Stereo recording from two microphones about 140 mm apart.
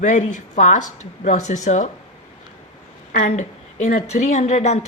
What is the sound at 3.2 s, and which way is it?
A woman's voice, 50° left (ahead or behind).